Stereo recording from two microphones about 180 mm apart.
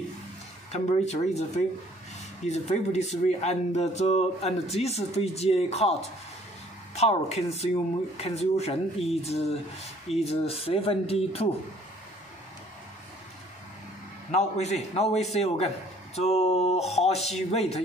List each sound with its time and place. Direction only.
0.7 s speech: 40° left (ahead or behind)
2.4 s speech: 40° left (ahead or behind)
14.3 s speech: 40° left (ahead or behind)